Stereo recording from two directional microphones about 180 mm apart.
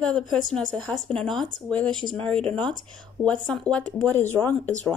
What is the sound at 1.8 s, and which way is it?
Speech, 25° right (ahead or behind).